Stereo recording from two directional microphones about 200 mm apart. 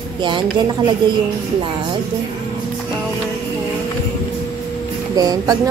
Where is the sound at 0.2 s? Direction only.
20° right (ahead or behind).